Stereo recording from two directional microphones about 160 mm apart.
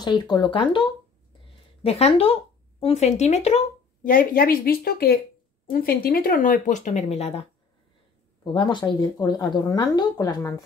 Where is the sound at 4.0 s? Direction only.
60° left (ahead or behind); by 7.4 s 40° left (ahead or behind).